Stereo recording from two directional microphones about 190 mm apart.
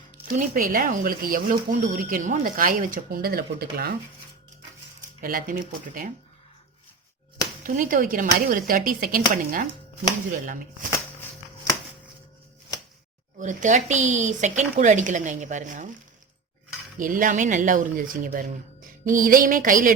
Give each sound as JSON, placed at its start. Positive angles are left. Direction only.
{"t": 0.3, "sound": "speech", "side_deg": -50}
{"t": 5.2, "sound": "speech", "side_deg": -45}
{"t": 7.6, "sound": "speech", "side_deg": -45}
{"t": 10.9, "sound": "shuffling cards", "side_deg": 15}
{"t": 13.4, "sound": "speech", "side_deg": -40}
{"t": 17.0, "sound": "speech", "side_deg": -45}